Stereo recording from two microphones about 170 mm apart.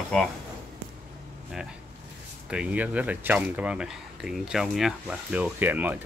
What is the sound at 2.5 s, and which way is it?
Speech, 5° right (ahead or behind).